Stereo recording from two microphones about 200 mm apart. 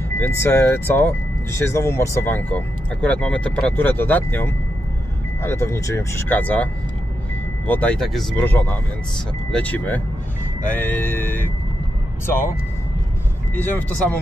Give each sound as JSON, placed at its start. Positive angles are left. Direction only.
{"t": 0.2, "sound": "speech", "side_deg": 15}
{"t": 13.6, "sound": "speech", "side_deg": 10}